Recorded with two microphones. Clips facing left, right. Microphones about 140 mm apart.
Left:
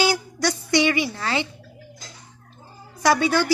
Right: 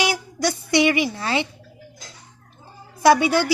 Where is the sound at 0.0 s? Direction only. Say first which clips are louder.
Left 1 dB; 20° right (ahead or behind).